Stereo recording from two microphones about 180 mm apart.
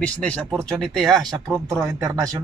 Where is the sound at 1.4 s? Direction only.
20° right (ahead or behind).